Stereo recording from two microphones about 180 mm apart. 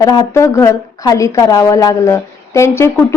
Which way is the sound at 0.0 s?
20° left (ahead or behind).